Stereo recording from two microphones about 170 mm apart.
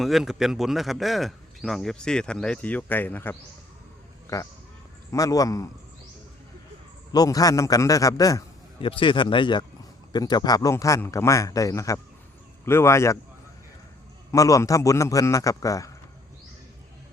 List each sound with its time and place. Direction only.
0.0 s speech: centre (ahead or behind)
5.1 s speech: 20° left (ahead or behind)
7.1 s a man's voice: 20° left (ahead or behind)
14.3 s speech: 20° left (ahead or behind)